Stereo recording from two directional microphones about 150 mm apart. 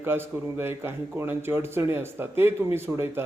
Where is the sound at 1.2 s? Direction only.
15° right (ahead or behind).